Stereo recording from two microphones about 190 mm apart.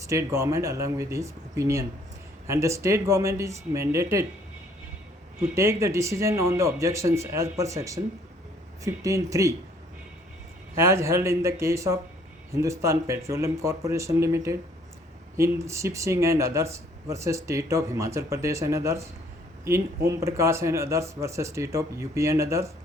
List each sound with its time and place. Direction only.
0.0 s speech: 15° right (ahead or behind)
5.5 s speech: 15° right (ahead or behind)
10.8 s speech: 15° right (ahead or behind)